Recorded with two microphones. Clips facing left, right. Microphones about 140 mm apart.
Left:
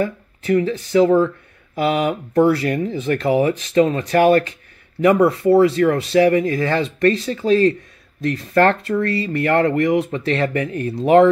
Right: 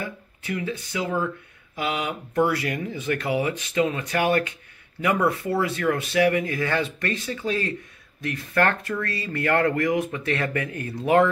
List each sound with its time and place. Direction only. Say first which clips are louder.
0.0 s speech: left 11 dB; 40° left (ahead or behind)